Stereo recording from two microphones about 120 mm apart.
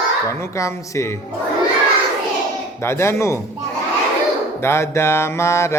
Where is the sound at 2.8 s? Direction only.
20° left (ahead or behind).